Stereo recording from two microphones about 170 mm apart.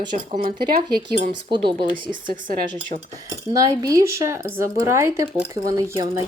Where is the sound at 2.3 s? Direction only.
60° right (ahead or behind).